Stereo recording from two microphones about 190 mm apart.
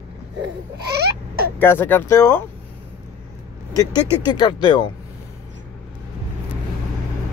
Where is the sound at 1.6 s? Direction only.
10° left (ahead or behind).